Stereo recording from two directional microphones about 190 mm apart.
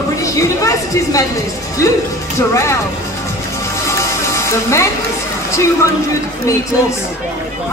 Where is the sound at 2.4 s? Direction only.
15° left (ahead or behind).